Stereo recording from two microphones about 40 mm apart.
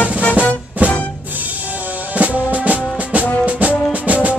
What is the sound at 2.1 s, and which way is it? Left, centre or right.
Music, right.